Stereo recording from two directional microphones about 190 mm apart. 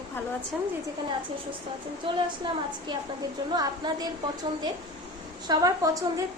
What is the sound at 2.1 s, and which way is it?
Speech, 25° right (ahead or behind).